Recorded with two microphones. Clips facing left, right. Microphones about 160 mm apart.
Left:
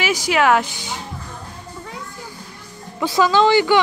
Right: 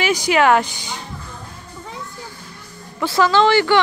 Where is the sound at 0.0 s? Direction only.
5° left (ahead or behind).